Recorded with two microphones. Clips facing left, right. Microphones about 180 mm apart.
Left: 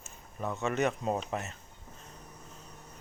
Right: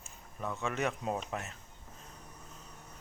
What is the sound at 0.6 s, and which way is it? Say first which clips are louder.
Speech: left 5 dB; centre (ahead or behind).